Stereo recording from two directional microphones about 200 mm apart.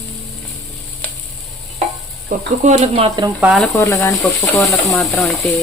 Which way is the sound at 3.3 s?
5° right (ahead or behind).